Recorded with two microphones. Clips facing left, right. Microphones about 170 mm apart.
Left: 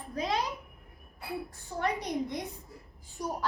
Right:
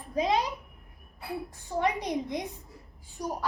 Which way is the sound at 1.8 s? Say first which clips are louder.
Right 2 dB; 15° right (ahead or behind).